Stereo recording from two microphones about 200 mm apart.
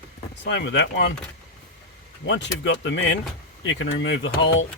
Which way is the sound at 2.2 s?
65° left (ahead or behind).